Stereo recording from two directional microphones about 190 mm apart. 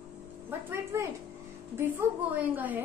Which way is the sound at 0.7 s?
15° right (ahead or behind).